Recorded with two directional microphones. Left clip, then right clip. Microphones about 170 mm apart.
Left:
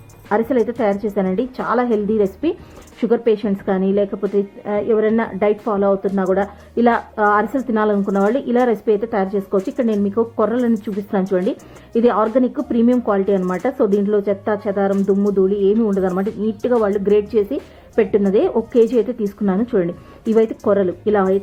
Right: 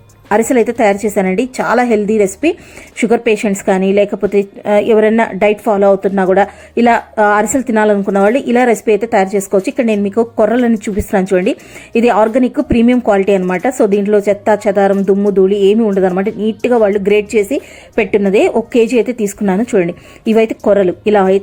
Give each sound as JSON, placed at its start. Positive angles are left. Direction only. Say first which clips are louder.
{"t": 0.3, "sound": "a woman's voice", "louder": "right 6 dB", "side_deg": -30}
{"t": 3.0, "sound": "a woman's voice", "louder": "right 5 dB", "side_deg": -25}
{"t": 4.6, "sound": "a woman's voice", "louder": "right 9 dB", "side_deg": -30}
{"t": 11.9, "sound": "a woman's voice", "louder": "right 5 dB", "side_deg": -25}
{"t": 16.0, "sound": "a woman's voice", "louder": "right 7 dB", "side_deg": -30}
{"t": 16.4, "sound": "a woman's voice", "louder": "right 6 dB", "side_deg": -15}